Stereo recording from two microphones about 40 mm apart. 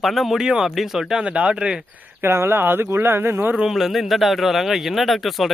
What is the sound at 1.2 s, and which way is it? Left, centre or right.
Speech, right.